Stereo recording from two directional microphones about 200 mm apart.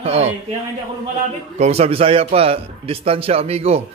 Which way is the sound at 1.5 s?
35° right (ahead or behind).